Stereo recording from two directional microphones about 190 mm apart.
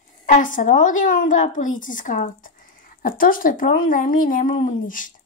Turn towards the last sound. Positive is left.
turn(degrees=45)  # may be behind; listen again after turning